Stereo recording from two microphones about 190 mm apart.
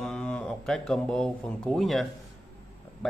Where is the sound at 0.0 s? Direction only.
5° left (ahead or behind).